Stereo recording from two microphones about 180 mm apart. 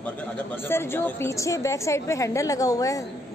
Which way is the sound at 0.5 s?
10° left (ahead or behind).